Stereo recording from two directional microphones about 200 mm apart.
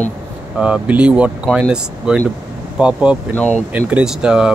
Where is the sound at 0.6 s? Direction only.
5° right (ahead or behind).